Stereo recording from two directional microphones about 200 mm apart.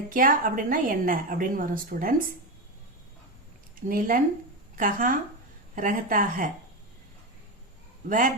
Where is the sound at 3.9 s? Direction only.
40° right (ahead or behind).